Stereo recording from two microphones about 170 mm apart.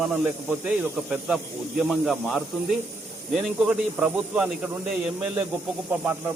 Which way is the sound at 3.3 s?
Centre (ahead or behind).